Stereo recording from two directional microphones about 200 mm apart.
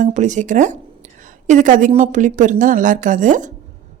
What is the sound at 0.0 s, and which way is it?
A woman's voice, 35° right (ahead or behind).